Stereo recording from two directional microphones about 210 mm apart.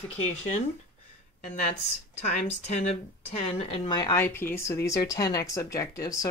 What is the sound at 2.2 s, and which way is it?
A woman's voice, 35° left (ahead or behind).